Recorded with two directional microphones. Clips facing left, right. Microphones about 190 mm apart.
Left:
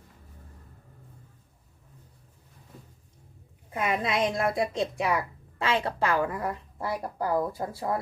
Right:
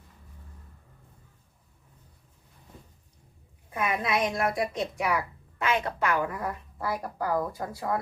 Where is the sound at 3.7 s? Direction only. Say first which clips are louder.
Even; 25° left (ahead or behind).